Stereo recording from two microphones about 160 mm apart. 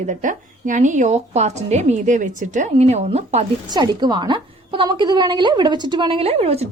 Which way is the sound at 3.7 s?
25° right (ahead or behind).